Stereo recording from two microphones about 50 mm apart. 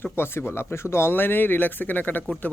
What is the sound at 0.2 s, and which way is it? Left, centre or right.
Speech, left.